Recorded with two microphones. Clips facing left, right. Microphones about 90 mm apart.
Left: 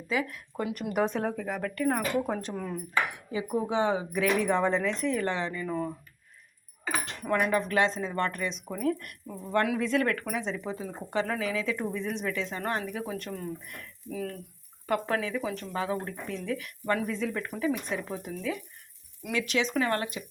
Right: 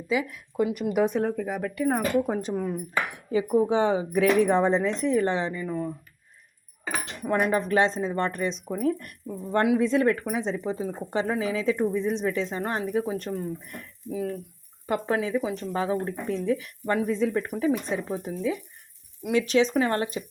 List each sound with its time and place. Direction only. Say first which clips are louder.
0.1 s speech: right 3 dB; 5° right (ahead or behind)
3.3 s speech: right 6 dB; 35° right (ahead or behind)
5.6 s speech: right 1 dB; 5° right (ahead or behind)
7.0 s keys jangling: right 3 dB; 20° right (ahead or behind)
7.5 s speech: right 3 dB; 30° right (ahead or behind)
14.1 s speech: right 5 dB; 10° right (ahead or behind)
14.8 s speech: right 3 dB; 20° right (ahead or behind)